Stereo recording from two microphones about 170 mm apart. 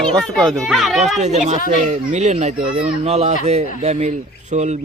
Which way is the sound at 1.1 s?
40° right (ahead or behind).